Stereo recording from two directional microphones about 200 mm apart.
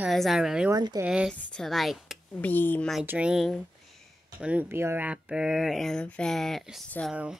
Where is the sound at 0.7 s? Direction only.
20° right (ahead or behind).